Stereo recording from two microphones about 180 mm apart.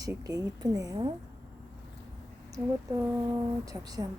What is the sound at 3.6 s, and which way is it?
Speech, 20° right (ahead or behind).